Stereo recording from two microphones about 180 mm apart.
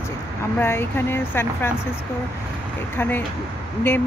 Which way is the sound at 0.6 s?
10° left (ahead or behind).